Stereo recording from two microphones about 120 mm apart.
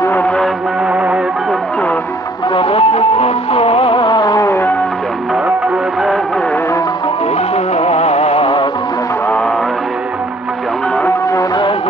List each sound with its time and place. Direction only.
0.0 s music: 15° left (ahead or behind)
0.9 s music: centre (ahead or behind)
2.5 s music: 55° left (ahead or behind); by 4.6 s 25° left (ahead or behind)
7.5 s music: 60° left (ahead or behind)
11.3 s music: 40° left (ahead or behind)